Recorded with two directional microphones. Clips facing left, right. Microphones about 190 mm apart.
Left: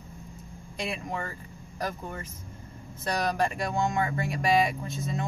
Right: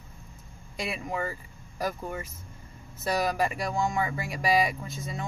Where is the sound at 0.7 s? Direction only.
5° right (ahead or behind).